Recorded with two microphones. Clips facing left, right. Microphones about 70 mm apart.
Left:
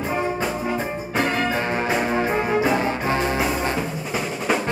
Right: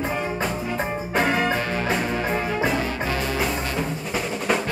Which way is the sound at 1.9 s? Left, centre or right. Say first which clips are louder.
Left 2 dB; centre.